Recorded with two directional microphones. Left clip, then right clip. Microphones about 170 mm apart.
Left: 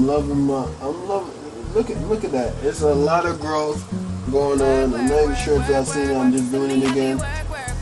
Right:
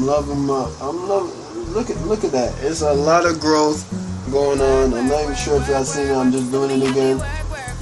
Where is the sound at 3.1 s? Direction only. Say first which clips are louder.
Right 5 dB; 10° right (ahead or behind).